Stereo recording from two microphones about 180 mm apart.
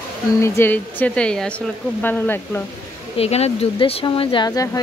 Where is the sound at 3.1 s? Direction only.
35° left (ahead or behind).